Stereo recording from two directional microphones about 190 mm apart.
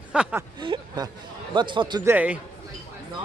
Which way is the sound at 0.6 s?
25° right (ahead or behind).